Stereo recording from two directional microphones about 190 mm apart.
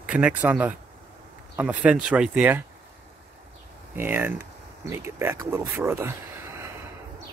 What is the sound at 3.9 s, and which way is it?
Speech, 10° right (ahead or behind).